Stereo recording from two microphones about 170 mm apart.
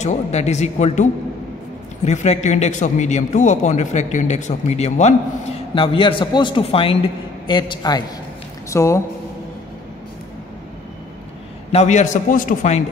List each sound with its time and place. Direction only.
0.0 s a man's voice: 40° left (ahead or behind)
2.0 s a man's voice: 45° left (ahead or behind); by 9.0 s 15° left (ahead or behind)
11.7 s a man's voice: 45° left (ahead or behind)